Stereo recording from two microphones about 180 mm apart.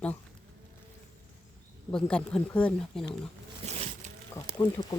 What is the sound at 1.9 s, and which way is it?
Speech, 5° left (ahead or behind).